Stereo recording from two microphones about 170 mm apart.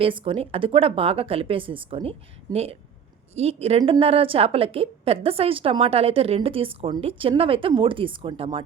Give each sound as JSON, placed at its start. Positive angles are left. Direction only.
{"t": 0.0, "sound": "a woman's voice", "side_deg": -30}